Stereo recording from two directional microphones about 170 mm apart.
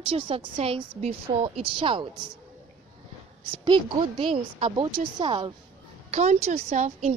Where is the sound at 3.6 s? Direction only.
30° right (ahead or behind).